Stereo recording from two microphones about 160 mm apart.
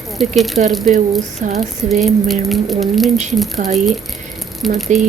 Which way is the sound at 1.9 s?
Centre (ahead or behind).